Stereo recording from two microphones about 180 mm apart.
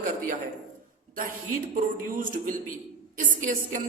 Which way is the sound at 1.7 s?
50° right (ahead or behind).